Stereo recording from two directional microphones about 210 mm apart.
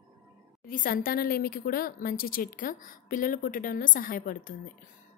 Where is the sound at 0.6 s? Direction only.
40° left (ahead or behind).